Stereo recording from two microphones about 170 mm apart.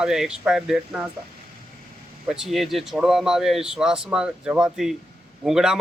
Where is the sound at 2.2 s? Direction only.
5° right (ahead or behind).